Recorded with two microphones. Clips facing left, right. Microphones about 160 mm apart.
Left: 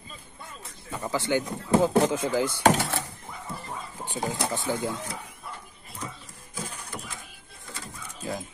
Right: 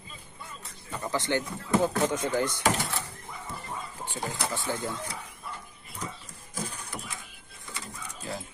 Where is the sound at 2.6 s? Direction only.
75° left (ahead or behind).